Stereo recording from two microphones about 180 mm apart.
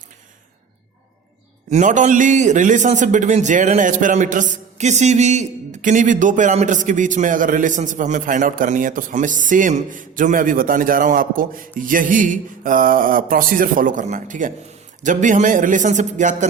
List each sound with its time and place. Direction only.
1.7 s a man's voice: 45° right (ahead or behind)